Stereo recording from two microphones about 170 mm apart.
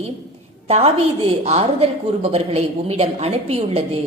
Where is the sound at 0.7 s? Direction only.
35° right (ahead or behind).